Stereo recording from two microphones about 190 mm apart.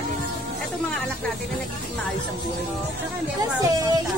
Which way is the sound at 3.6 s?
20° right (ahead or behind).